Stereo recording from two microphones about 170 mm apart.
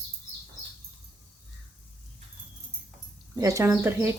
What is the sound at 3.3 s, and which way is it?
Speech, 20° right (ahead or behind).